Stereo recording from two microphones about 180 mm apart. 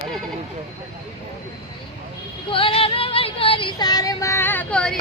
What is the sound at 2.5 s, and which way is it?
Child singing, 30° left (ahead or behind).